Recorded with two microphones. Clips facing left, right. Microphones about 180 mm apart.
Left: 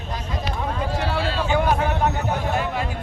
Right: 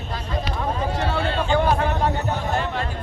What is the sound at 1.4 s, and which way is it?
A man's voice, 10° left (ahead or behind).